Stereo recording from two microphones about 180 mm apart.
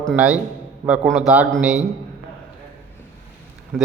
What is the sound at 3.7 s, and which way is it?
Speech, 5° left (ahead or behind).